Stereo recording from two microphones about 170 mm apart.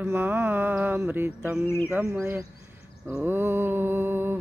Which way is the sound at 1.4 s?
5° right (ahead or behind).